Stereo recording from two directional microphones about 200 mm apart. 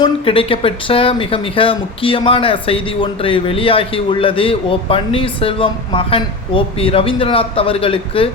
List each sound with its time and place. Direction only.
0.0 s speech: 25° left (ahead or behind)